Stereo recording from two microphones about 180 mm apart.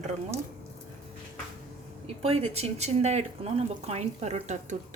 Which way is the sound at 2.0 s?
35° right (ahead or behind).